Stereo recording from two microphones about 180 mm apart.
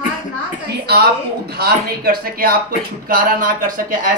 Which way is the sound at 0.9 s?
60° right (ahead or behind).